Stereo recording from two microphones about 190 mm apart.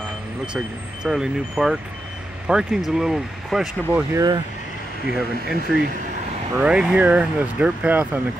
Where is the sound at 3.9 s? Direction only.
20° right (ahead or behind).